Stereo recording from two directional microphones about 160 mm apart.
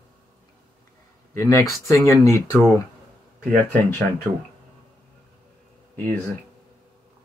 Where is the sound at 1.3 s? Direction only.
20° left (ahead or behind).